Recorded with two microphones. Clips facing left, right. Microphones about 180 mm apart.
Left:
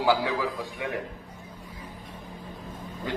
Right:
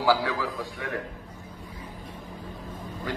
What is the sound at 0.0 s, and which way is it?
Speech, 15° left (ahead or behind).